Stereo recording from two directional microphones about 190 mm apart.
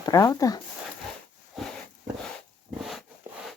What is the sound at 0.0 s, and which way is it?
Speech, 20° left (ahead or behind).